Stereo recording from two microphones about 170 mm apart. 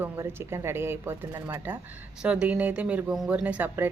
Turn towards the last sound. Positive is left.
turn(degrees=-10)  # may be behind; listen again after turning